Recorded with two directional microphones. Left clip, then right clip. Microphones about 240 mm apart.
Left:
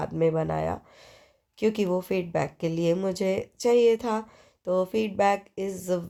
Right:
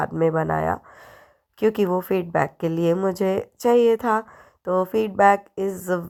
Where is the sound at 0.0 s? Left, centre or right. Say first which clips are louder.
Right 4 dB; right.